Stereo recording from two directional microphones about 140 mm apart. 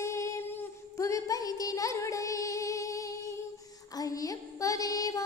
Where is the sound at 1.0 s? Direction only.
25° left (ahead or behind).